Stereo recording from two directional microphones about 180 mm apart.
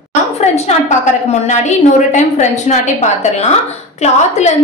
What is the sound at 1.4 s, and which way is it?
A woman's voice, 40° left (ahead or behind).